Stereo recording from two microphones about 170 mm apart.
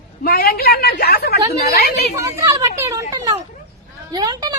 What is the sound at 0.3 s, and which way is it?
A woman's voice, 65° left (ahead or behind).